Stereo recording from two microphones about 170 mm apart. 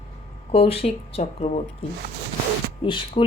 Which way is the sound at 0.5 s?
35° left (ahead or behind).